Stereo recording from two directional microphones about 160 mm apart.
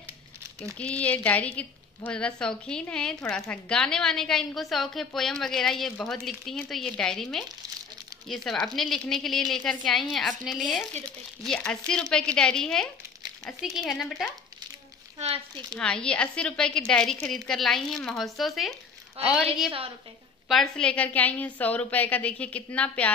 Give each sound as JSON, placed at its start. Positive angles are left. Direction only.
{"t": 0.7, "sound": "a woman's voice", "side_deg": 10}
{"t": 15.1, "sound": "speech", "side_deg": -40}
{"t": 15.8, "sound": "a woman's voice", "side_deg": 5}